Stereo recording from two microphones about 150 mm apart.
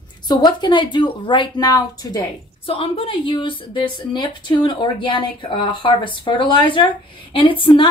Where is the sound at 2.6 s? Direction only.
40° left (ahead or behind).